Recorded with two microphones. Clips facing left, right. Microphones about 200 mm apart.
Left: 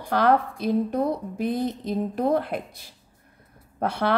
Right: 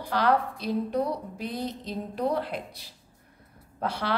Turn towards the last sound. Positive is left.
turn(degrees=55)  # may be behind; listen again after turning